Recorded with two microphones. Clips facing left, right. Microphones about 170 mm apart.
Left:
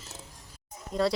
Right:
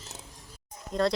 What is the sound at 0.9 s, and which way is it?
Speech, 5° left (ahead or behind).